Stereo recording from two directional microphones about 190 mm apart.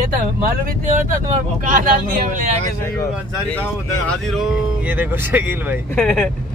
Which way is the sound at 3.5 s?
5° left (ahead or behind).